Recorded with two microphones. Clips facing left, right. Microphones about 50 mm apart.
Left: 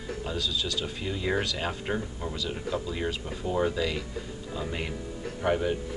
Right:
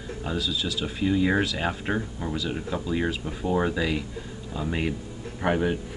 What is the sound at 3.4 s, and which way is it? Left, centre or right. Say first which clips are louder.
Speech: right 2 dB; right.